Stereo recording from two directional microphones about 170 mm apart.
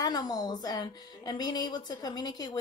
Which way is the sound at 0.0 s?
25° left (ahead or behind).